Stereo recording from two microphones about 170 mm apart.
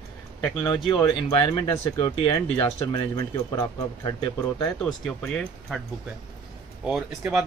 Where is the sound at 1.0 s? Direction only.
25° left (ahead or behind).